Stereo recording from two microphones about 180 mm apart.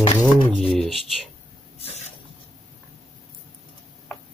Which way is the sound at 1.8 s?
35° left (ahead or behind).